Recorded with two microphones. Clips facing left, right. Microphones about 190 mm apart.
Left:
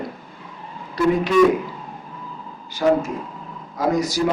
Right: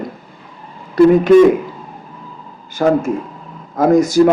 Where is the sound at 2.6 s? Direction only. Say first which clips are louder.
Right 4 dB; 50° right (ahead or behind).